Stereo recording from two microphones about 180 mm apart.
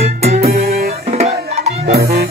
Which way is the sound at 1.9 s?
60° right (ahead or behind).